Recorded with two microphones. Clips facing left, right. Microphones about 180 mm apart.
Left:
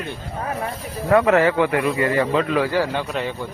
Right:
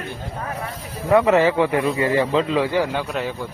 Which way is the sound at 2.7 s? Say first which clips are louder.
Even; 5° right (ahead or behind).